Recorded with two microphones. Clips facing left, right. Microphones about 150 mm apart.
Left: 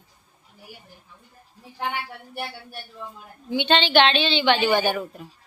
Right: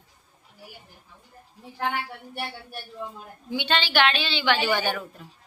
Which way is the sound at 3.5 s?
20° left (ahead or behind).